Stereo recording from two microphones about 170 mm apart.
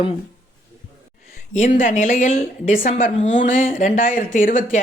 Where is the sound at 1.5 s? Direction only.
50° left (ahead or behind).